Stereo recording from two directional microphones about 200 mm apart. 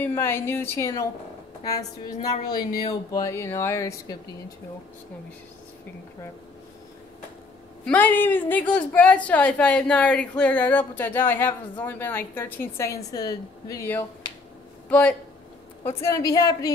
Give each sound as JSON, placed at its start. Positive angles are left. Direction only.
{"t": 0.0, "sound": "a woman's voice", "side_deg": 10}
{"t": 2.9, "sound": "a woman's voice", "side_deg": 15}
{"t": 7.8, "sound": "a woman's voice", "side_deg": 5}